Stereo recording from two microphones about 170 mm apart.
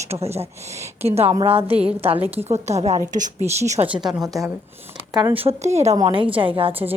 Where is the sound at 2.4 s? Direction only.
40° right (ahead or behind).